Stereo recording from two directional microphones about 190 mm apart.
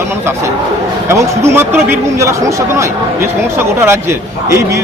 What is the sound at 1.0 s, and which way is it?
A man's voice, 15° right (ahead or behind).